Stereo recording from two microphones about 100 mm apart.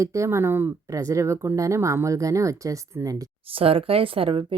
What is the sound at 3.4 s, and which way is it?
Speech, 70° right (ahead or behind).